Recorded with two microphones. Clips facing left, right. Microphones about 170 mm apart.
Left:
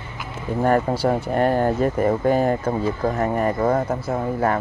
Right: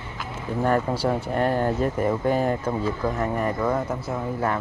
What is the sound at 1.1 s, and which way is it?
Speech, 5° left (ahead or behind).